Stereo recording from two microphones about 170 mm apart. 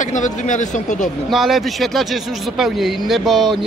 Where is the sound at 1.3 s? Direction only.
Centre (ahead or behind).